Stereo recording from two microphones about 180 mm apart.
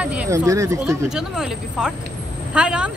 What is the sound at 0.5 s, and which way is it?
Speech, 15° right (ahead or behind).